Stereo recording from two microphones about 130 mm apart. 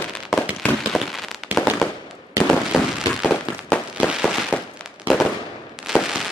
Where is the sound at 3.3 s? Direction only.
15° left (ahead or behind).